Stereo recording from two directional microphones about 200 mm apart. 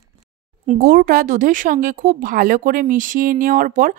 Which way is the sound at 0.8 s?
45° right (ahead or behind).